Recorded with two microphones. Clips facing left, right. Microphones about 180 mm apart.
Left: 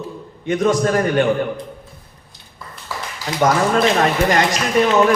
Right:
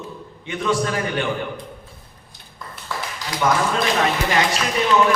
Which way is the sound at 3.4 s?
50° left (ahead or behind).